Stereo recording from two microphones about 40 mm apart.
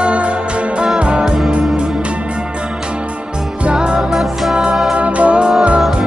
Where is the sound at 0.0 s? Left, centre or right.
Right.